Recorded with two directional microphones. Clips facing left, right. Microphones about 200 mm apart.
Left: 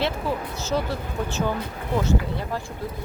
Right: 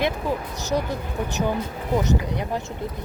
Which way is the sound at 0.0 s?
15° right (ahead or behind).